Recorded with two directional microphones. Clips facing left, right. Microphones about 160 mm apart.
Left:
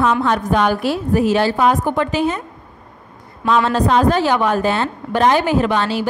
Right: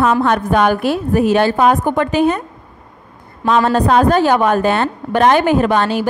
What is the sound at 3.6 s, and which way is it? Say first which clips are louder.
A woman's voice: right 3 dB; 50° right (ahead or behind).